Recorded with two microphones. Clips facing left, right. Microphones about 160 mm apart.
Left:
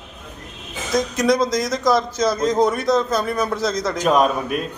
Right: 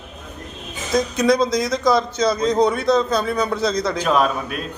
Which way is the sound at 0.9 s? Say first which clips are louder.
Right 1 dB; centre (ahead or behind).